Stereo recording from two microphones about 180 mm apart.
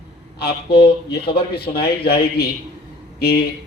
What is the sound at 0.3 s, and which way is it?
Speech, 65° left (ahead or behind).